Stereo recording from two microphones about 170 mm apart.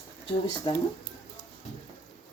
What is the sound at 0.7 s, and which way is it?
Speech, 30° left (ahead or behind).